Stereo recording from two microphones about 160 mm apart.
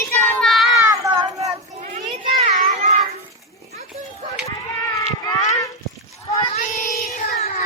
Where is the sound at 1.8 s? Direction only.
50° right (ahead or behind).